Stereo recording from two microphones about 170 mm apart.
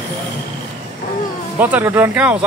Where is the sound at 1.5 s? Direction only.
10° right (ahead or behind).